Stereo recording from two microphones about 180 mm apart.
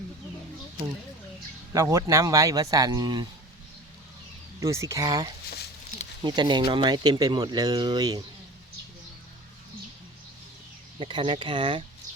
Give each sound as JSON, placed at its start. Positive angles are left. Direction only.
{"t": 1.7, "sound": "speech", "side_deg": -20}
{"t": 4.6, "sound": "speech", "side_deg": -15}
{"t": 11.0, "sound": "speech", "side_deg": -30}